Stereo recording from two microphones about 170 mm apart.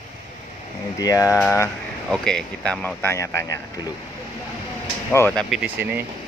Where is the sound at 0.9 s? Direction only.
20° left (ahead or behind).